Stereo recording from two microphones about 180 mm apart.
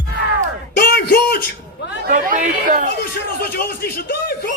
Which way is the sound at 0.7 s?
55° left (ahead or behind).